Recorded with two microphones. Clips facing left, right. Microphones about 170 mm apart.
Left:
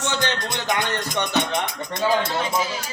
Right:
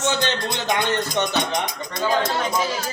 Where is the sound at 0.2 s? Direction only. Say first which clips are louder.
Right 1 dB; 20° right (ahead or behind).